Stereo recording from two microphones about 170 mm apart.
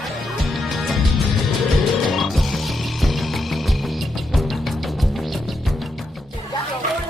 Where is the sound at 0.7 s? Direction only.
Centre (ahead or behind).